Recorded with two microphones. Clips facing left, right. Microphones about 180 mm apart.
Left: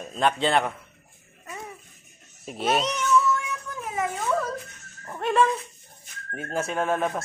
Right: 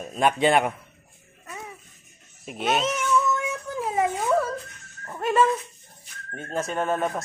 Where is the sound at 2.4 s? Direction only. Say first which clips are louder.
Even; centre (ahead or behind).